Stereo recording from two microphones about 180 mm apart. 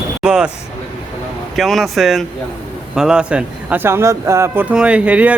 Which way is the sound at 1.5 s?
Centre (ahead or behind).